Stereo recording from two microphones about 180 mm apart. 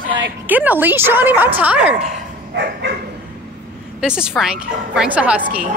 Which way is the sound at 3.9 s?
5° right (ahead or behind).